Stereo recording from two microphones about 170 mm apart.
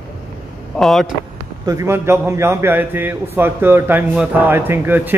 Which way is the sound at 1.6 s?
20° right (ahead or behind).